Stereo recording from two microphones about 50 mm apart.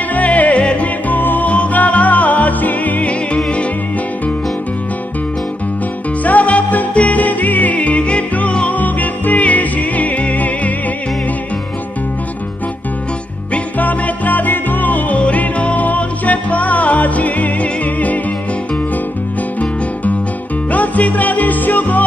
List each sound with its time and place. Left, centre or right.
0.1 s music: left
6.2 s music: left
13.7 s music: left
15.1 s music: left
20.7 s music: left